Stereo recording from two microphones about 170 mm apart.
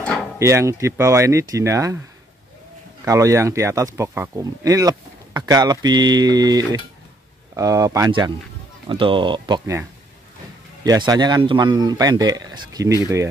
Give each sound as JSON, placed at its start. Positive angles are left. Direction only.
{"t": 0.0, "sound": "a sound", "side_deg": 5}
{"t": 0.4, "sound": "speech", "side_deg": -15}
{"t": 3.1, "sound": "speech", "side_deg": -20}
{"t": 10.8, "sound": "speech", "side_deg": -20}